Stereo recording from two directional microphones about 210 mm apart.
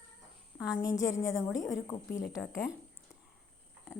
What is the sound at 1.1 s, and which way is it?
Speech, 15° left (ahead or behind).